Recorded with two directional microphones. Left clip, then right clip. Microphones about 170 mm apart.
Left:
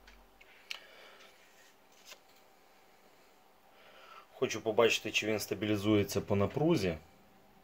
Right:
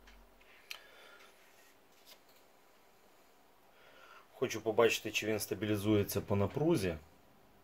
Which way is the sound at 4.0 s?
5° left (ahead or behind).